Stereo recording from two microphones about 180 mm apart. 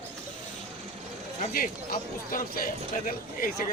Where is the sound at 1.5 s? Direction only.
50° left (ahead or behind).